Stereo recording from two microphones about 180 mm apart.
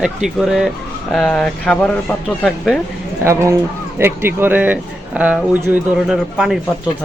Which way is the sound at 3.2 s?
15° right (ahead or behind).